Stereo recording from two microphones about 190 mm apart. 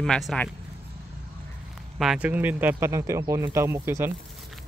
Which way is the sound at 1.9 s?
5° right (ahead or behind).